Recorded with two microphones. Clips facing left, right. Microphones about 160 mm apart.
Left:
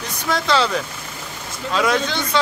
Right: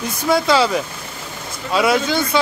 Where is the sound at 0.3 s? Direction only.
10° right (ahead or behind).